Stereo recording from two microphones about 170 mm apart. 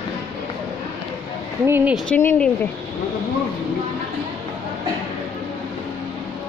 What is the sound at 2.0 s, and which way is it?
Speech, 10° left (ahead or behind).